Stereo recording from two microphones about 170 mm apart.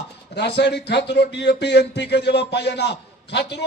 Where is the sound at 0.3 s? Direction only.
85° left.